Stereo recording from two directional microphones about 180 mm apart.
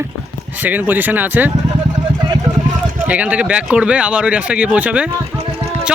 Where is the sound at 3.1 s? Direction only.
10° right (ahead or behind).